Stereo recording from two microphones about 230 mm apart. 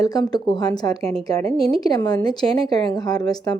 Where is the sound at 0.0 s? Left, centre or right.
Centre.